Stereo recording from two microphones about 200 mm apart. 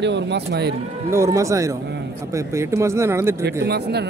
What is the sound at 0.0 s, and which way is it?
Speech, 60° right (ahead or behind).